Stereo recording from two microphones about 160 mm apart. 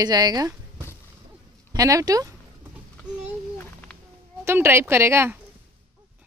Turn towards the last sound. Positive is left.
turn(degrees=-15)  # may be behind; listen again after turning